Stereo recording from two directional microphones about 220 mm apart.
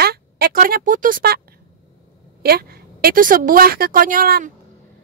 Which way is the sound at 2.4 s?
45° right (ahead or behind).